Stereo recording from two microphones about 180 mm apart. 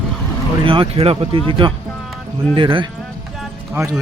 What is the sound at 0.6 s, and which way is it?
Speech, 30° right (ahead or behind).